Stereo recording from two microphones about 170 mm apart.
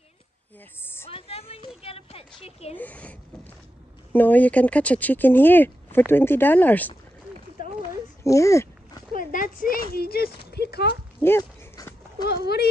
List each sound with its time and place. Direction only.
1.0 s speech: 35° left (ahead or behind)
2.8 s speech: 10° left (ahead or behind)
7.6 s a sound: 55° left (ahead or behind)
8.2 s speech: 15° left (ahead or behind)
9.1 s a sound: 50° left (ahead or behind)
9.9 s speech: 65° left (ahead or behind)
11.1 s dog: 15° left (ahead or behind)
12.3 s speech: 70° left (ahead or behind)